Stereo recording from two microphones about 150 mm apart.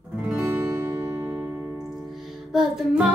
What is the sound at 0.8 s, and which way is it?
Music, 15° right (ahead or behind).